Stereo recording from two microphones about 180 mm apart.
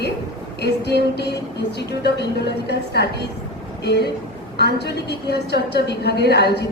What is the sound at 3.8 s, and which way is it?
A woman's voice, 65° left (ahead or behind).